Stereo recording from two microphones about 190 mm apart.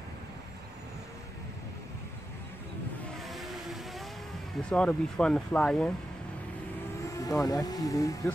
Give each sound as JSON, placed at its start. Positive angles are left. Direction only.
{"t": 3.2, "sound": "vehicle", "side_deg": 0}
{"t": 4.6, "sound": "speech", "side_deg": 5}
{"t": 7.2, "sound": "speech", "side_deg": 15}